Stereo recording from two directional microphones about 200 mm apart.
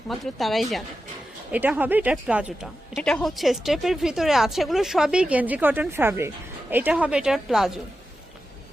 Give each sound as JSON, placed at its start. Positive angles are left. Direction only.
{"t": 0.1, "sound": "a woman's voice", "side_deg": 0}